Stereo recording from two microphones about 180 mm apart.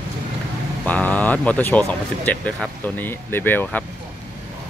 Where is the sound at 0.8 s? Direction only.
10° left (ahead or behind).